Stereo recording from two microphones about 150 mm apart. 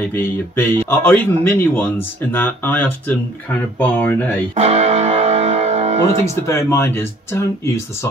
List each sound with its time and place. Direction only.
0.1 s speech: 15° left (ahead or behind)
4.6 s music: 45° right (ahead or behind)
6.4 s speech: 20° left (ahead or behind)